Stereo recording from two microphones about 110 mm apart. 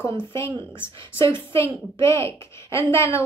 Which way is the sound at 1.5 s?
25° left (ahead or behind).